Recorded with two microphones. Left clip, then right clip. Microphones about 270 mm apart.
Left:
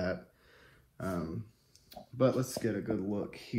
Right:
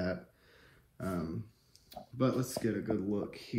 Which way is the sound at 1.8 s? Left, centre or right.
Centre.